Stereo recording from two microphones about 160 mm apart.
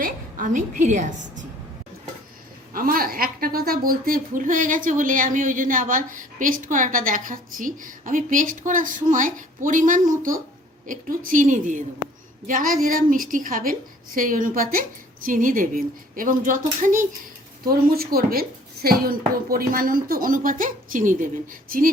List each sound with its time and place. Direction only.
0.0 s a woman's voice: 55° right (ahead or behind)
2.7 s a woman's voice: 65° right (ahead or behind)
17.7 s a woman's voice: 70° right (ahead or behind)